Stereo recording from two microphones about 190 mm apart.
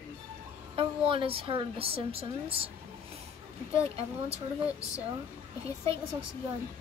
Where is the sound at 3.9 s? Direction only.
30° right (ahead or behind).